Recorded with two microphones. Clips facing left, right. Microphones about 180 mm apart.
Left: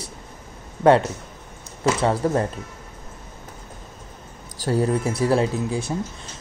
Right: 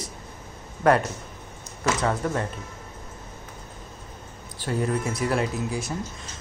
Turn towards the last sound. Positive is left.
turn(degrees=30)  # may be behind; listen again after turning